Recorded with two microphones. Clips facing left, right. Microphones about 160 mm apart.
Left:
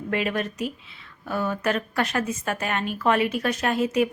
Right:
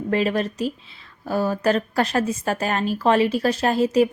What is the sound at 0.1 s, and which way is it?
Speech, 35° right (ahead or behind).